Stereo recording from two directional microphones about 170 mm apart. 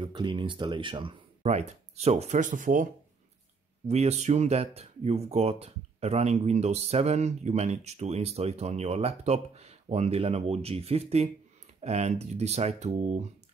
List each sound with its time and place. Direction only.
0.0 s speech: 25° right (ahead or behind); by 2.9 s 50° right (ahead or behind)
3.8 s speech: 40° right (ahead or behind)